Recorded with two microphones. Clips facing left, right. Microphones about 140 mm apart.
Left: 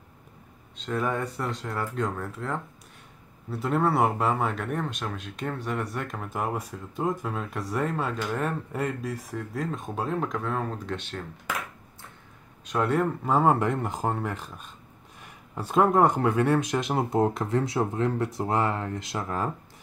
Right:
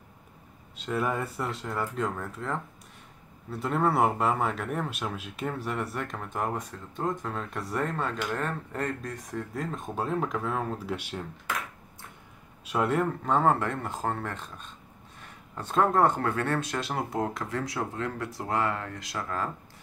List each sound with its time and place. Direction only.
0.7 s speech: 5° right (ahead or behind)
12.6 s speech: centre (ahead or behind); by 19.5 s 20° left (ahead or behind)